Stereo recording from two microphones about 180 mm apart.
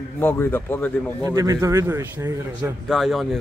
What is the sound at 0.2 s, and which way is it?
Speech, 10° left (ahead or behind).